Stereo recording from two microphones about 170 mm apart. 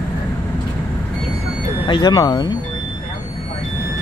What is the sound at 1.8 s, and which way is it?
Speech, 25° left (ahead or behind).